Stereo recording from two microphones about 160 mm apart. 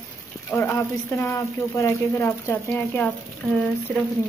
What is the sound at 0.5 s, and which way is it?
Speech, 15° left (ahead or behind).